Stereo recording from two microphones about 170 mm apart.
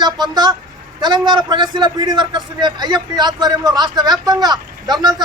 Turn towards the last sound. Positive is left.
turn(degrees=-25)  # may be behind; listen again after turning